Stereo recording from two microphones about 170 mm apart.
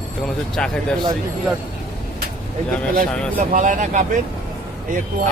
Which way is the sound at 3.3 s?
50° right (ahead or behind).